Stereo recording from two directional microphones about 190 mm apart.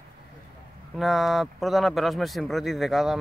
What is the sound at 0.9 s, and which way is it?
Speech, centre (ahead or behind).